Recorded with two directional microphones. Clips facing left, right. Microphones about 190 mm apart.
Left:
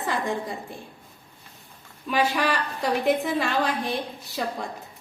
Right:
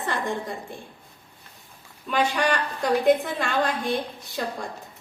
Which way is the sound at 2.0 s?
5° left (ahead or behind).